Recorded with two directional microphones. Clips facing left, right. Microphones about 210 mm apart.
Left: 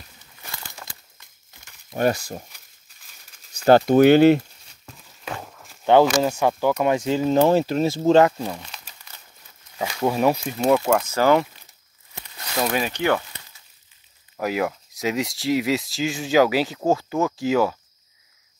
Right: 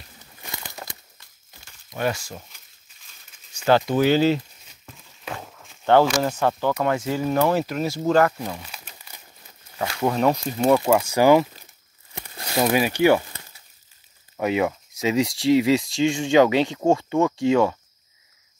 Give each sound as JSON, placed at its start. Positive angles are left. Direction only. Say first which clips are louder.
{"t": 1.9, "sound": "speech", "louder": "left 4 dB", "side_deg": 40}
{"t": 3.5, "sound": "speech", "louder": "left 5 dB", "side_deg": 45}
{"t": 5.9, "sound": "speech", "louder": "left 2 dB", "side_deg": 15}
{"t": 8.6, "sound": "crumpling", "louder": "right 1 dB", "side_deg": -10}
{"t": 10.0, "sound": "speech", "louder": "left 1 dB", "side_deg": 5}
{"t": 10.9, "sound": "speech", "louder": "right 2 dB", "side_deg": -10}
{"t": 12.6, "sound": "speech", "louder": "right 5 dB", "side_deg": -10}
{"t": 14.3, "sound": "speech", "louder": "right 2 dB", "side_deg": 0}